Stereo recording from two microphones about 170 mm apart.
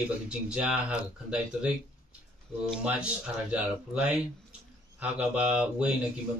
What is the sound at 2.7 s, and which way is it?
Speech, 5° right (ahead or behind).